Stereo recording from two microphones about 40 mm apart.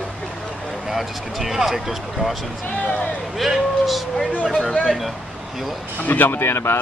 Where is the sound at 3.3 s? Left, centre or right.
Centre.